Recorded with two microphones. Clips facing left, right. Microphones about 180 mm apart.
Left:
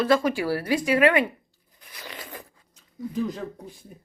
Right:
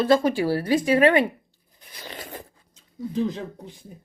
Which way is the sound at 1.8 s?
30° right (ahead or behind).